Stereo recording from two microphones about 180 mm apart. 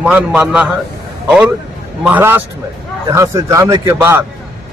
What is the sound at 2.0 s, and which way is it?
A man's voice, 10° right (ahead or behind).